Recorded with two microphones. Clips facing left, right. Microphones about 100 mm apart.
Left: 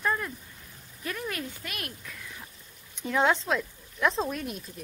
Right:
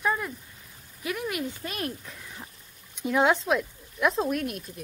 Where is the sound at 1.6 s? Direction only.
30° right (ahead or behind).